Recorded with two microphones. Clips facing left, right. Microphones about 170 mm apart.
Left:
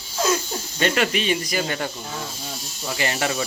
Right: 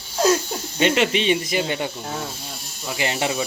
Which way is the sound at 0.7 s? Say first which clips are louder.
Right 3 dB; 20° right (ahead or behind).